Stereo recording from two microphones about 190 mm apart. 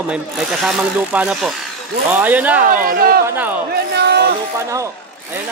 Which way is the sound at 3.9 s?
60° right (ahead or behind).